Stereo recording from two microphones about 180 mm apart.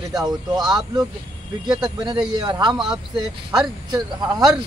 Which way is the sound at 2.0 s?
25° right (ahead or behind).